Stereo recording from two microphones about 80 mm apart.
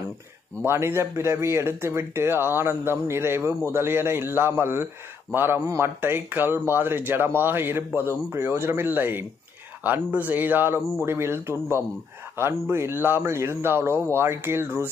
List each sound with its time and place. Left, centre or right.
0.7 s speech: right